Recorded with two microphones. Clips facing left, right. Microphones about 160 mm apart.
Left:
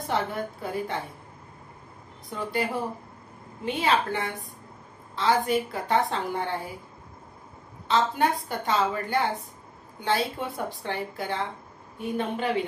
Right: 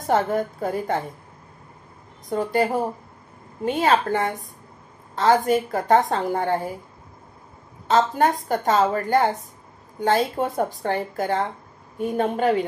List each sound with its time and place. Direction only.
0.0 s a woman's voice: 45° right (ahead or behind)
2.2 s a woman's voice: 45° right (ahead or behind)
7.9 s a woman's voice: 45° right (ahead or behind)